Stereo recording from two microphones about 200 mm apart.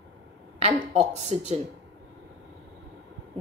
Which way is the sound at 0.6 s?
35° right (ahead or behind).